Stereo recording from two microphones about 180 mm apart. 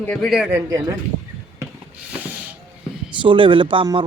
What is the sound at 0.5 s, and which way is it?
Speech, 20° right (ahead or behind).